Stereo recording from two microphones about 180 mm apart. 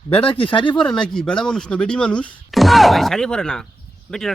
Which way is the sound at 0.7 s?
5° left (ahead or behind).